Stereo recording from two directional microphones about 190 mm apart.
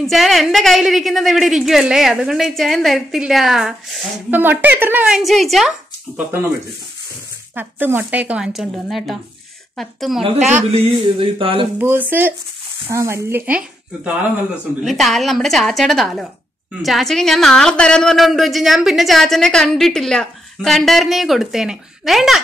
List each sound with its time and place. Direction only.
0.0 s speech: centre (ahead or behind)
7.5 s speech: 10° right (ahead or behind)
10.5 s speech: 30° right (ahead or behind)
11.8 s speech: 10° right (ahead or behind)